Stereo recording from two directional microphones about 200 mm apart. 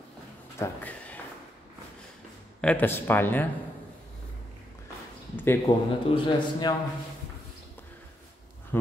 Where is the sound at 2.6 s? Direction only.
5° left (ahead or behind).